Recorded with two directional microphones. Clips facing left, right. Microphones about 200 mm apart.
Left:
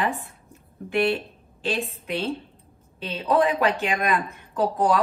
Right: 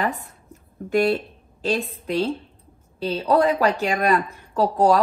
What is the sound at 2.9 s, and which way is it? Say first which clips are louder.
A woman's voice: right 2 dB; 35° right (ahead or behind).